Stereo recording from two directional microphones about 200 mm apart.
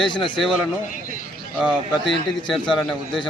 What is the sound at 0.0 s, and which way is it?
Speech, 25° left (ahead or behind).